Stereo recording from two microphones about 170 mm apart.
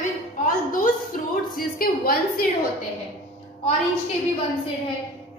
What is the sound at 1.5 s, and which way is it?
Speech, 60° left (ahead or behind).